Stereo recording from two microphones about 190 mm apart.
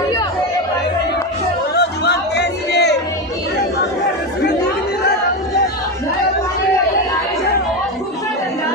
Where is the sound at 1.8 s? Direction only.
65° left (ahead or behind).